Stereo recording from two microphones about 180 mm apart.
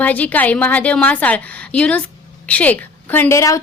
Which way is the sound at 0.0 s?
10° left (ahead or behind).